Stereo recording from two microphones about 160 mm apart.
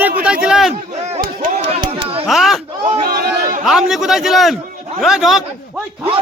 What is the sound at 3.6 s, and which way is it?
A man's voice, centre (ahead or behind).